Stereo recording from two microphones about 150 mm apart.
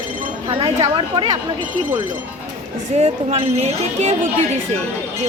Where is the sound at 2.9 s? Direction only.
45° right (ahead or behind).